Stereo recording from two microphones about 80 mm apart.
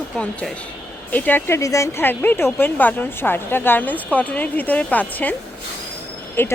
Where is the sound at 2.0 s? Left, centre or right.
Left.